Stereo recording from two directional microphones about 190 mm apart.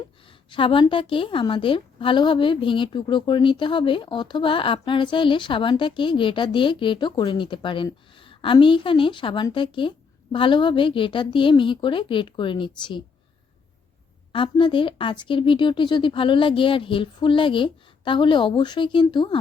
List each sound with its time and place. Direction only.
0.5 s a woman's voice: 25° left (ahead or behind)
14.3 s a woman's voice: 25° left (ahead or behind)